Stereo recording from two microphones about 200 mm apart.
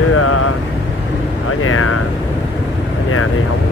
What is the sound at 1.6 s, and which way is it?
Speech, 90° left.